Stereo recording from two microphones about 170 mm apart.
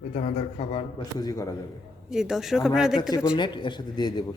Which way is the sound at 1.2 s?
20° left (ahead or behind).